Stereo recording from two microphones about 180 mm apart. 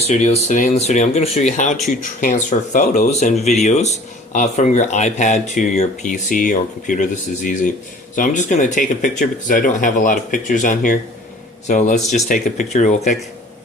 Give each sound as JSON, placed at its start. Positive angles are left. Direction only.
{"t": 0.0, "sound": "speech", "side_deg": 40}
{"t": 8.1, "sound": "speech", "side_deg": 45}